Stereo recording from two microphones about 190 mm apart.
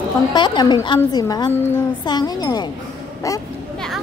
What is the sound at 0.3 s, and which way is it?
A woman's voice, 20° left (ahead or behind).